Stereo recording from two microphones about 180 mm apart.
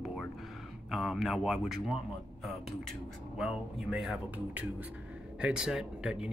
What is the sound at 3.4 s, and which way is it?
Speech, 5° right (ahead or behind).